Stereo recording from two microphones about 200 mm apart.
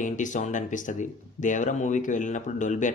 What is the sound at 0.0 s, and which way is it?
Speech, 40° left (ahead or behind).